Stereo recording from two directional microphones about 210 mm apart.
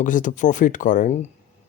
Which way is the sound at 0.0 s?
40° left (ahead or behind).